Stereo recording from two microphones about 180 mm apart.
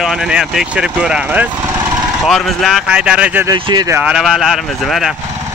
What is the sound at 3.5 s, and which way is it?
Speech, 25° right (ahead or behind).